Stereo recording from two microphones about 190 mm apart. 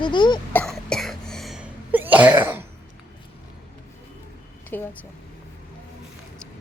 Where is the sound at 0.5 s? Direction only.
5° left (ahead or behind).